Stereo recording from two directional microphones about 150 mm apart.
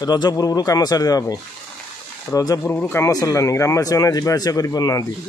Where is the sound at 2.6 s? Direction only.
10° left (ahead or behind).